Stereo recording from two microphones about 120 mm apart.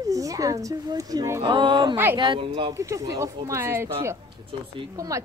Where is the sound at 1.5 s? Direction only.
40° right (ahead or behind).